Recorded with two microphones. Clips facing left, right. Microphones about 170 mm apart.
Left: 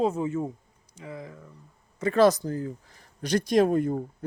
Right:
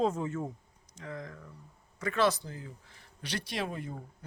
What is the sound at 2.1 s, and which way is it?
Speech, 40° left (ahead or behind).